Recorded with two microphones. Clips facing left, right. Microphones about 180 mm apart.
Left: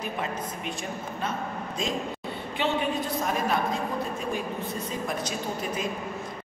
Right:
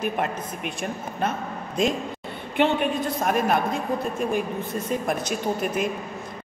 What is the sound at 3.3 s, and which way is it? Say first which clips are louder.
Speech: right 7 dB; 60° right (ahead or behind).